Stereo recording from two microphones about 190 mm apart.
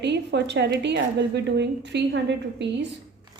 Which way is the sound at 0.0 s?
65° right (ahead or behind).